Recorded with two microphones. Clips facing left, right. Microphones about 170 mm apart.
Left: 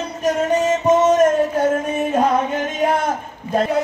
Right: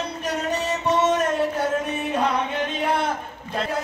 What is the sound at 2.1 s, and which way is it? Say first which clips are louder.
Music: left 6 dB; 45° left (ahead or behind).